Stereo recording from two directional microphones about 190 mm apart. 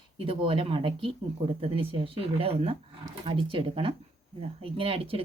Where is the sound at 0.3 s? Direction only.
25° right (ahead or behind).